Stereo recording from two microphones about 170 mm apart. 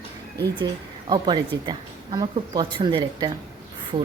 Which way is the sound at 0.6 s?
25° right (ahead or behind).